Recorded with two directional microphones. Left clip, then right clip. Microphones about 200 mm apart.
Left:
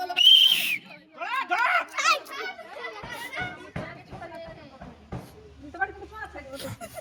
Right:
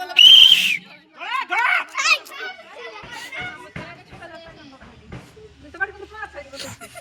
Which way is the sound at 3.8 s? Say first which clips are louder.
Right 2 dB; 30° left (ahead or behind).